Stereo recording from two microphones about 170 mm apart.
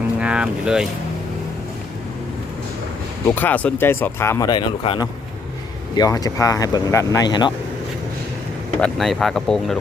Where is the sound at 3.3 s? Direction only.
10° left (ahead or behind).